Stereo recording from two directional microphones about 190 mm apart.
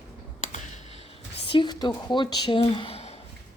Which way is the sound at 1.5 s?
25° left (ahead or behind).